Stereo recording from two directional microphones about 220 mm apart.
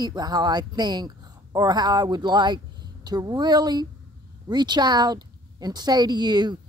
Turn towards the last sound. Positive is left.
turn(degrees=-20)  # may be behind; listen again after turning